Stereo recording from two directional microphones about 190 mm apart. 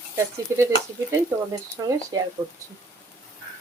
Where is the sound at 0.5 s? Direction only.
15° right (ahead or behind).